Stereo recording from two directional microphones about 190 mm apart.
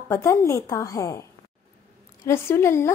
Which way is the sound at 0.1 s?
15° left (ahead or behind).